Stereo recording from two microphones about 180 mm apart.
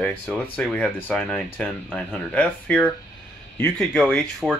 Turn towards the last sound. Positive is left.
turn(degrees=0)  # may be behind; listen again after turning